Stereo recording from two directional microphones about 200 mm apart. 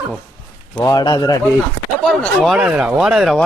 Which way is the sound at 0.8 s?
20° left (ahead or behind).